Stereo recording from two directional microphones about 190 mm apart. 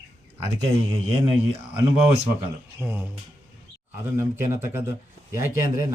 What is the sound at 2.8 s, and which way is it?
Speech, 10° right (ahead or behind).